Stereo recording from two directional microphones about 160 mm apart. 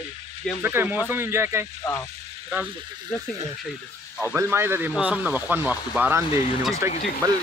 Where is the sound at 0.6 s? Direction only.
15° right (ahead or behind).